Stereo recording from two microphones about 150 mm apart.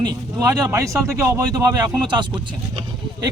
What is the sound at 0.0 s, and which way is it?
Speech, 25° right (ahead or behind).